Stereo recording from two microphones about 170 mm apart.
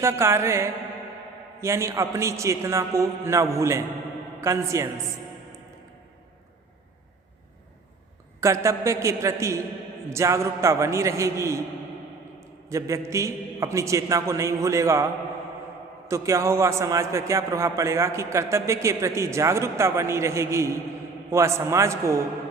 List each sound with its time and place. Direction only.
0.0 s a man's voice: 15° right (ahead or behind)
8.4 s a man's voice: 15° right (ahead or behind)
16.0 s a man's voice: 15° right (ahead or behind)